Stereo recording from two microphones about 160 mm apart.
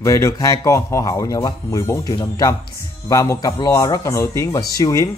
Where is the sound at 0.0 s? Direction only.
20° left (ahead or behind).